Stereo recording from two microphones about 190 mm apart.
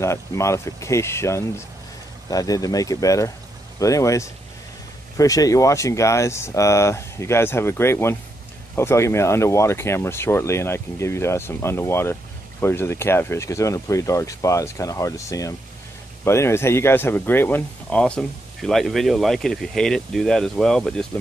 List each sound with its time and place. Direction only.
0.0 s speech: 15° left (ahead or behind)